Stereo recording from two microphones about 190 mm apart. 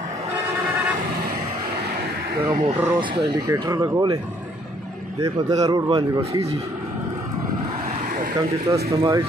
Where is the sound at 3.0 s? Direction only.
25° right (ahead or behind).